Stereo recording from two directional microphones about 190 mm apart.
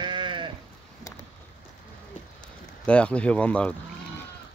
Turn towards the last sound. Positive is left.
turn(degrees=5)  # may be behind; listen again after turning